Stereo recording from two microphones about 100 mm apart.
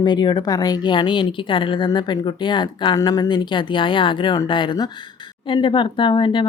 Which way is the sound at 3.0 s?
40° left (ahead or behind).